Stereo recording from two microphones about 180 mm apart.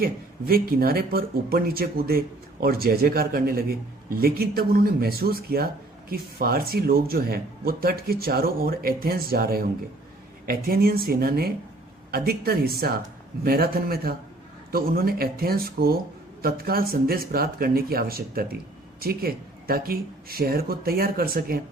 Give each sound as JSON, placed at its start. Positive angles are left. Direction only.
{"t": 0.0, "sound": "speech", "side_deg": -55}